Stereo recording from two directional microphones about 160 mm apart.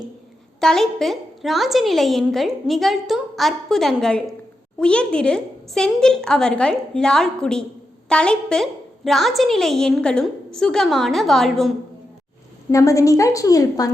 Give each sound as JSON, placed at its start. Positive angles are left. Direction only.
{"t": 0.6, "sound": "a woman's voice", "side_deg": 5}
{"t": 12.7, "sound": "a woman's voice", "side_deg": 20}